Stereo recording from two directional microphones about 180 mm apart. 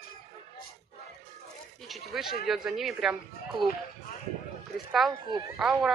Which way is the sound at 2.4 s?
Centre (ahead or behind).